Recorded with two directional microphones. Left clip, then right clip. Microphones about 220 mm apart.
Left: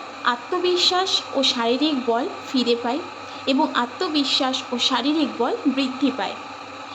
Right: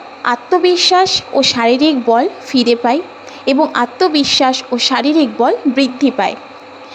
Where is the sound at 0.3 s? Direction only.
30° right (ahead or behind).